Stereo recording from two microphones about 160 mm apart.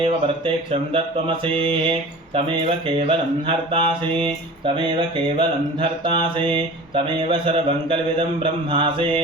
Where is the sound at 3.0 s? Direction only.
35° right (ahead or behind).